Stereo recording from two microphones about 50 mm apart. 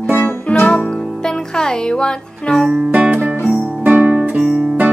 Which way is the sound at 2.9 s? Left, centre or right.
Right.